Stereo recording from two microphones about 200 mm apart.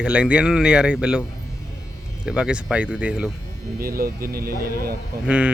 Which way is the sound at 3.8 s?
45° right (ahead or behind).